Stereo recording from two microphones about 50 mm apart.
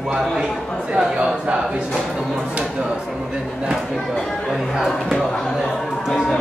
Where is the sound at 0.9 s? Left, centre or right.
Centre.